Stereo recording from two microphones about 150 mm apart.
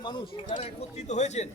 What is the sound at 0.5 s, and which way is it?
Speech, 50° left (ahead or behind).